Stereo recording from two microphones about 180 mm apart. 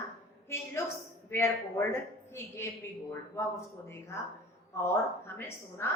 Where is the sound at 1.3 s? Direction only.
15° left (ahead or behind).